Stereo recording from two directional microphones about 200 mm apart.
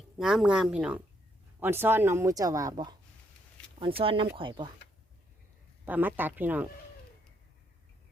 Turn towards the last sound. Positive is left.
turn(degrees=-10)  # may be behind; listen again after turning